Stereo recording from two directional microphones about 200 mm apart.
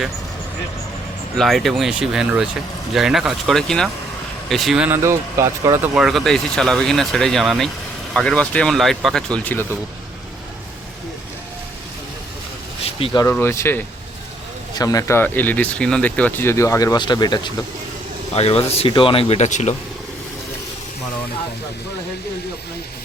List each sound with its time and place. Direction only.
1.4 s speech: centre (ahead or behind)
5.9 s speech: centre (ahead or behind)
12.8 s vehicle: 30° left (ahead or behind)
13.3 s speech: 10° left (ahead or behind); by 19.7 s 35° left (ahead or behind)